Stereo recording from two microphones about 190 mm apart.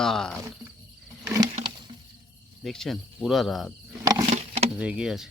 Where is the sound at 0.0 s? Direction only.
Centre (ahead or behind).